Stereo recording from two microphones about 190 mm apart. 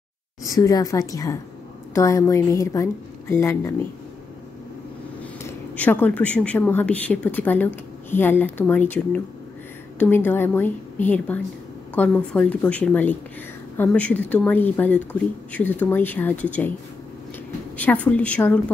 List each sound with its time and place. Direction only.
0.5 s speech: 20° left (ahead or behind)
5.4 s speech: 10° left (ahead or behind)
17.7 s speech: 10° left (ahead or behind)